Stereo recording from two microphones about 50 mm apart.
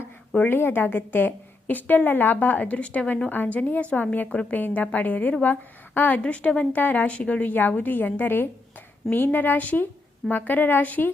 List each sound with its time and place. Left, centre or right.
0.5 s a woman's voice: left
6.2 s a woman's voice: left